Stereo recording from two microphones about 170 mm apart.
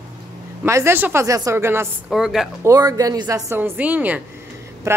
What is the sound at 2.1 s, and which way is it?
Speech, 5° right (ahead or behind).